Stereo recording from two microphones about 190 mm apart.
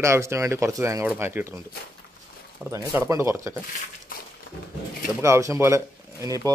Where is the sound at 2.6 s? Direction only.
10° right (ahead or behind).